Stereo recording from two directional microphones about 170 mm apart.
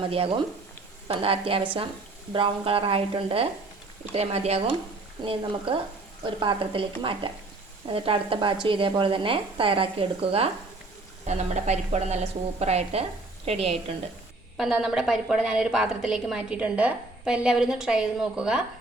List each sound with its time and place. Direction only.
0.0 s a woman's voice: 35° right (ahead or behind)
14.6 s a woman's voice: centre (ahead or behind)